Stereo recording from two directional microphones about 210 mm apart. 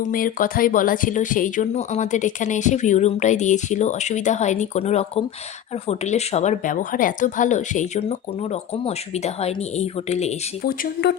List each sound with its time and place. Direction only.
0.0 s speech: 40° left (ahead or behind)
10.6 s speech: 50° left (ahead or behind)